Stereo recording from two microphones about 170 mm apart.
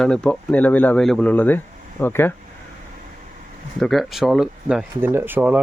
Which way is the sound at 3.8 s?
Centre (ahead or behind).